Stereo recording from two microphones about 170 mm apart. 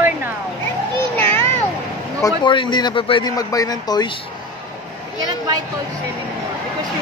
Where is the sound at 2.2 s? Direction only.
30° left (ahead or behind).